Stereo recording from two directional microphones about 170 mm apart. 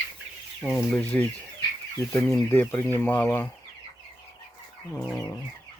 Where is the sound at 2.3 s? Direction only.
10° left (ahead or behind).